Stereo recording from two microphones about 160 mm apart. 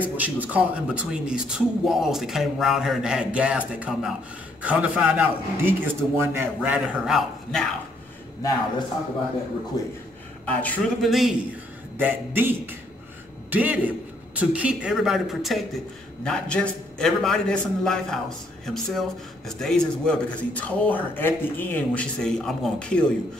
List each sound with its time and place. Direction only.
0.2 s a man's voice: 10° right (ahead or behind)
8.4 s a man's voice: 20° left (ahead or behind)
10.4 s speech: 10° left (ahead or behind)
12.0 s a man's voice: 15° right (ahead or behind); by 23.0 s 5° left (ahead or behind)